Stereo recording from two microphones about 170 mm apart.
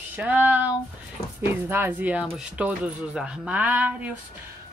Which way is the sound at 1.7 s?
10° right (ahead or behind).